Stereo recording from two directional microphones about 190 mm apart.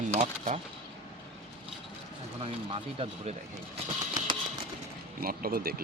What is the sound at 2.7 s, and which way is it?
Speech, 30° right (ahead or behind).